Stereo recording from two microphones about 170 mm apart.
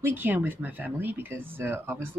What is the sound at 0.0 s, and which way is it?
Speech, 10° right (ahead or behind).